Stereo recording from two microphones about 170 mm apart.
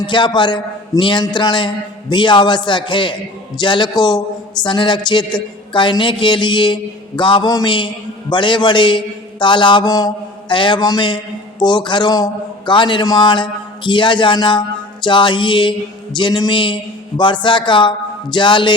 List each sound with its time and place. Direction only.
0.0 s a man's voice: 25° left (ahead or behind)